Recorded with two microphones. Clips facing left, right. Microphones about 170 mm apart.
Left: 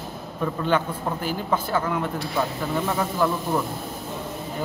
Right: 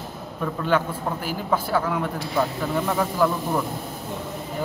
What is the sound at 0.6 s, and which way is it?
Speech, 5° right (ahead or behind).